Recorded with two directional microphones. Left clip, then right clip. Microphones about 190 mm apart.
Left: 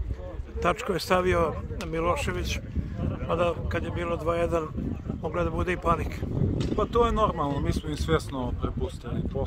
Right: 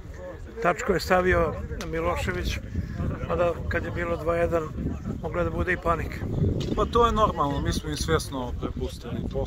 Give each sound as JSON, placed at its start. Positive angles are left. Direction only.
{"t": 0.7, "sound": "speech", "side_deg": 15}
{"t": 6.8, "sound": "speech", "side_deg": 0}